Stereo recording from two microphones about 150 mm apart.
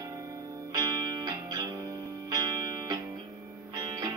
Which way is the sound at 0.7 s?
25° right (ahead or behind).